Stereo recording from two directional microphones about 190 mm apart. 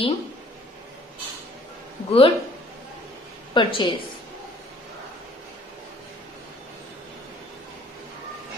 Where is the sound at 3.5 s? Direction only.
25° left (ahead or behind).